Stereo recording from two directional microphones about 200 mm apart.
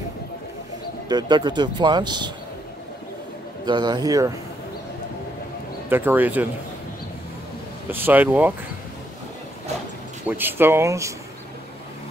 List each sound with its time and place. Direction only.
1.0 s speech: 20° right (ahead or behind)
3.6 s speech: 20° right (ahead or behind)
5.9 s speech: 10° right (ahead or behind)
7.9 s speech: 10° right (ahead or behind)
10.2 s speech: 10° right (ahead or behind)